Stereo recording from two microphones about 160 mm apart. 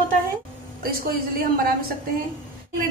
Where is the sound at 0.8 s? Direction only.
65° right (ahead or behind).